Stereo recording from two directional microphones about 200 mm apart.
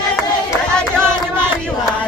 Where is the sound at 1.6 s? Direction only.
5° left (ahead or behind).